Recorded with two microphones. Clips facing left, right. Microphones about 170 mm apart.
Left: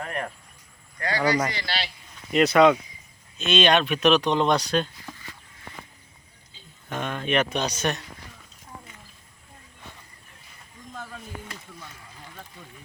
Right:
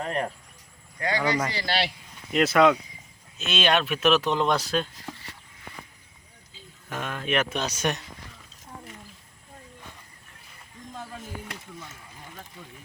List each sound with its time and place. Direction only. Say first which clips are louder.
0.0 s speech: right 3 dB; 25° right (ahead or behind)
1.6 s speech: right 5 dB; 55° right (ahead or behind)
2.3 s speech: left 2 dB; centre (ahead or behind)
6.5 s speech: left 2 dB; 5° right (ahead or behind)